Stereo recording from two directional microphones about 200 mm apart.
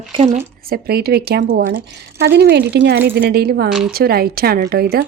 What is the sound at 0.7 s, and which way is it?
A woman's voice, 50° right (ahead or behind).